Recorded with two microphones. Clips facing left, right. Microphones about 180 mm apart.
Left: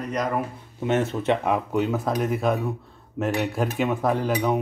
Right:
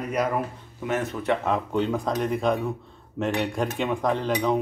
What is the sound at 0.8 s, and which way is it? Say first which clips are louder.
Speech: left 4 dB; 25° left (ahead or behind).